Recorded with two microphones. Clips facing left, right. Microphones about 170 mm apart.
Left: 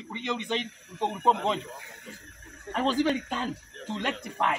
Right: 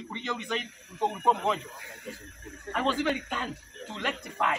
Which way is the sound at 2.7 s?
35° left (ahead or behind).